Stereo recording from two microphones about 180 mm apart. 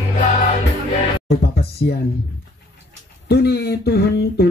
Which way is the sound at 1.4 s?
60° left (ahead or behind).